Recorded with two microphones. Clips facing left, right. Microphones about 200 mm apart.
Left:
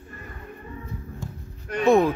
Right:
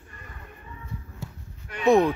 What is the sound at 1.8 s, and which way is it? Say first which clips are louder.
Speech: left 1 dB; centre (ahead or behind).